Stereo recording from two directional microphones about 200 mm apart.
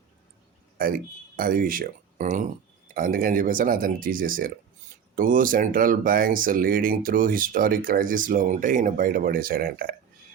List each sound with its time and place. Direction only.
0.8 s speech: 45° right (ahead or behind)